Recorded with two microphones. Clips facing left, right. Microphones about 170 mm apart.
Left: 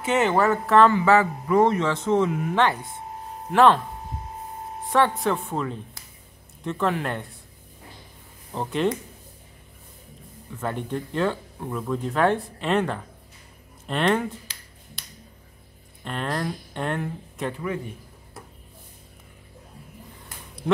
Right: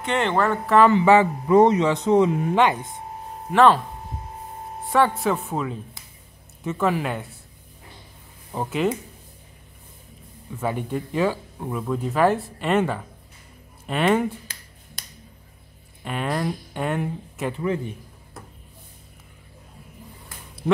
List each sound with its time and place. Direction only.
0.0 s speech: 5° left (ahead or behind)
0.8 s speech: 20° right (ahead or behind)
3.5 s speech: centre (ahead or behind)
4.8 s speech: centre (ahead or behind)
8.5 s speech: 5° right (ahead or behind)
10.6 s speech: 10° right (ahead or behind)
16.0 s speech: 5° right (ahead or behind)